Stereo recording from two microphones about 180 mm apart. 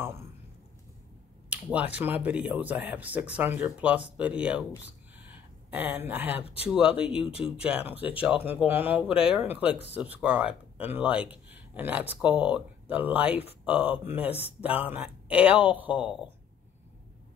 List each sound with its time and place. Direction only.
1.5 s speech: 10° right (ahead or behind)
6.4 s speech: 35° left (ahead or behind)
6.7 s speech: 5° right (ahead or behind)